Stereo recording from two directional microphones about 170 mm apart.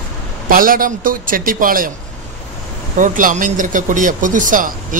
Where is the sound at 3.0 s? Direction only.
50° right (ahead or behind).